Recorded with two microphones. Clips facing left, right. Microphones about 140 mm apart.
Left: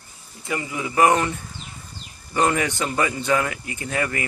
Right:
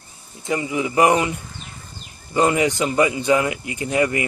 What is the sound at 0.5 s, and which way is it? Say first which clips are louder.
Speech: right 5 dB; 20° right (ahead or behind).